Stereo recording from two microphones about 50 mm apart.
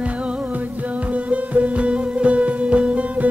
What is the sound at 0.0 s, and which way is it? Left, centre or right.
Music, right.